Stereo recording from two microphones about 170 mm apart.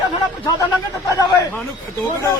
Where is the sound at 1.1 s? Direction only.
20° left (ahead or behind).